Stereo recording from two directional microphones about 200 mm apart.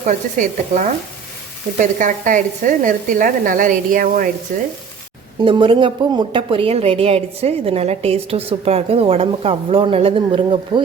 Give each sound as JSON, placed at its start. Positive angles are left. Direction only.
{"t": 0.0, "sound": "a woman's voice", "side_deg": -40}
{"t": 5.5, "sound": "a woman's voice", "side_deg": -25}